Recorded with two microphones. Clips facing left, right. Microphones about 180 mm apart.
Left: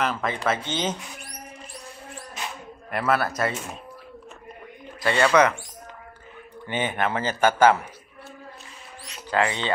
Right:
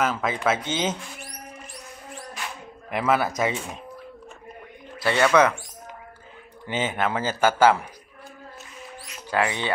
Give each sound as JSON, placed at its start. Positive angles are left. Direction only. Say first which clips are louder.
{"t": 0.0, "sound": "a man's voice", "louder": "right 2 dB", "side_deg": -5}
{"t": 2.4, "sound": "a sound", "louder": "left 2 dB", "side_deg": 20}
{"t": 2.9, "sound": "a man's voice", "louder": "right 1 dB", "side_deg": -10}
{"t": 5.0, "sound": "a man's voice", "louder": "even", "side_deg": -10}
{"t": 5.3, "sound": "speech", "louder": "even", "side_deg": 10}
{"t": 6.7, "sound": "a man's voice", "louder": "even", "side_deg": -10}
{"t": 9.3, "sound": "a man's voice", "louder": "left 1 dB", "side_deg": -10}